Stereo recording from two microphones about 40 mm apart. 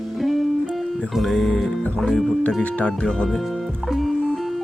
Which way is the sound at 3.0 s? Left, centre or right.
Left.